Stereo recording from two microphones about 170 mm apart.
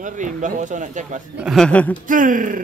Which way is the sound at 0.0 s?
50° right (ahead or behind).